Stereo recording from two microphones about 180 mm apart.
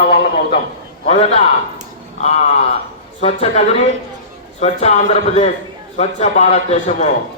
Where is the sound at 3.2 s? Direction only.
35° left (ahead or behind).